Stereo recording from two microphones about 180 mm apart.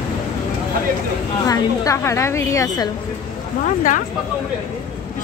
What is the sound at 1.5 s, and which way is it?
A woman's voice, 15° left (ahead or behind).